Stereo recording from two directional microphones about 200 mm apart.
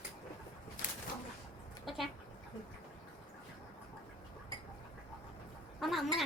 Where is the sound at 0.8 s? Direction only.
40° left (ahead or behind).